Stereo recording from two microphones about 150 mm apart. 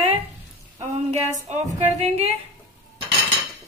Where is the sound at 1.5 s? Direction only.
45° right (ahead or behind).